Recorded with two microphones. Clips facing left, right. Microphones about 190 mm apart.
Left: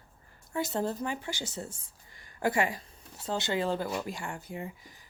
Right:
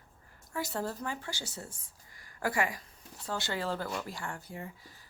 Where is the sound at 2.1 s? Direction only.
25° left (ahead or behind).